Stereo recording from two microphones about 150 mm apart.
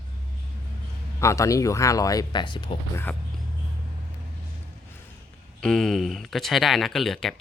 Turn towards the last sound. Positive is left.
turn(degrees=0)  # may be behind; listen again after turning